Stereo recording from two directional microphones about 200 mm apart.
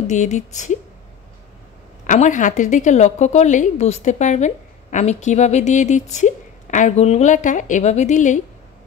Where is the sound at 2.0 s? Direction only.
40° left (ahead or behind).